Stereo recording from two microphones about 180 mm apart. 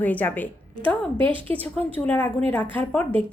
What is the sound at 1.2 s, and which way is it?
Speech, 30° right (ahead or behind).